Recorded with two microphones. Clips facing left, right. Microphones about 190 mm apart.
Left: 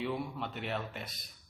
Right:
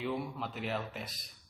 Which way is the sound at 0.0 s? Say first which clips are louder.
Even; centre (ahead or behind).